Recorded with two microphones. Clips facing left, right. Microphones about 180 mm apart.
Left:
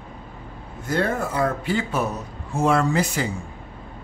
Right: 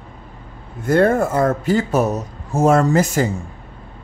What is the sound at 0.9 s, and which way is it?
Speech, 50° right (ahead or behind).